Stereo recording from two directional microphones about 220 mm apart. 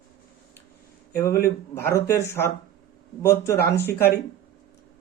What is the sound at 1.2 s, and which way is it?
Speech, 10° left (ahead or behind).